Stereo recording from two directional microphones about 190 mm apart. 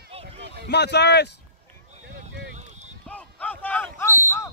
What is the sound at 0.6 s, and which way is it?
Speech, 65° left (ahead or behind).